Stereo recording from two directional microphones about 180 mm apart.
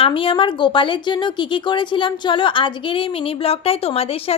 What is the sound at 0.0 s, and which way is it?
Speech, 30° left (ahead or behind).